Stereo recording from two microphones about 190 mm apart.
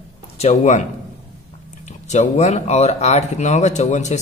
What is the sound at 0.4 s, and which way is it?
Speech, 35° left (ahead or behind).